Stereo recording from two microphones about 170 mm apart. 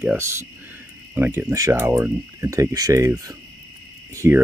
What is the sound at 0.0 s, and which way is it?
Speech, 10° right (ahead or behind).